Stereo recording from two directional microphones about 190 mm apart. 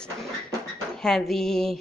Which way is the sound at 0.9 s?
Centre (ahead or behind).